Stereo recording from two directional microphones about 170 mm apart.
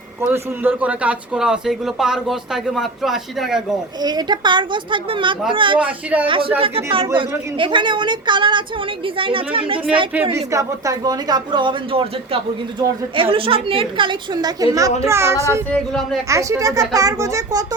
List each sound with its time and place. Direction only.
0.2 s a man's voice: 10° right (ahead or behind)
4.0 s a woman's voice: 25° right (ahead or behind)
5.8 s a child's voice: 10° right (ahead or behind)
6.2 s a woman's voice: 30° right (ahead or behind)
10.3 s a woman's voice: 20° right (ahead or behind)
15.7 s a man's voice: centre (ahead or behind)
16.3 s a woman's voice: 20° right (ahead or behind)